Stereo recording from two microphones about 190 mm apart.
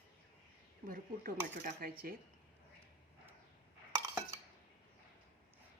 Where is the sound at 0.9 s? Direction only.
45° right (ahead or behind).